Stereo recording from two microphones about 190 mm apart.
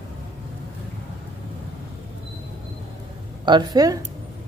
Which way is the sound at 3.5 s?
20° right (ahead or behind).